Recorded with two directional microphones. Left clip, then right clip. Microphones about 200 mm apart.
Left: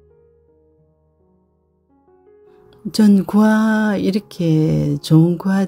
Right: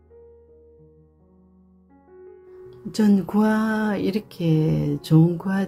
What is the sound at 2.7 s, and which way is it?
Speech, 35° left (ahead or behind).